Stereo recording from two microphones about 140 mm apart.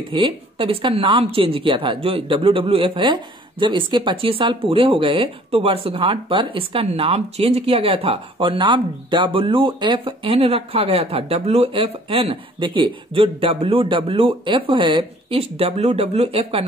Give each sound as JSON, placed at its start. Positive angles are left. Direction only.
{"t": 0.1, "sound": "a woman's voice", "side_deg": -40}